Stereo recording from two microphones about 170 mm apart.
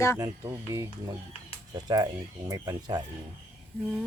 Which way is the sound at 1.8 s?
25° right (ahead or behind).